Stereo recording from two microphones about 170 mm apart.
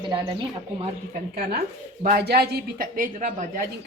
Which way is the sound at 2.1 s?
70° right (ahead or behind).